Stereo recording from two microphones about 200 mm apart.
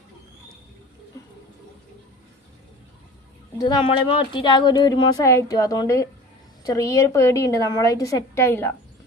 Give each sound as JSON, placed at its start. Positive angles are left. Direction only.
{"t": 3.6, "sound": "a woman's voice", "side_deg": 20}